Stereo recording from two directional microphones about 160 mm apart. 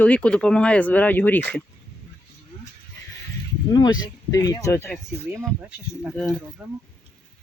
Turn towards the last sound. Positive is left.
turn(degrees=-15)  # may be behind; listen again after turning